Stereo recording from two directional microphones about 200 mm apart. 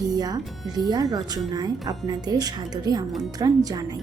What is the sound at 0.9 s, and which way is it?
Speech, 20° right (ahead or behind).